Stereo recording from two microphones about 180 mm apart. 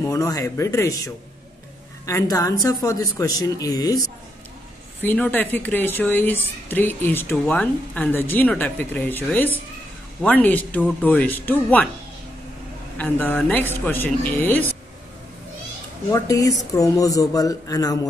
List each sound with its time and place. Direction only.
0.1 s a woman's voice: 20° left (ahead or behind)
5.0 s a woman's voice: 10° left (ahead or behind)
12.9 s a woman's voice: 10° left (ahead or behind)
16.1 s a woman's voice: 20° left (ahead or behind)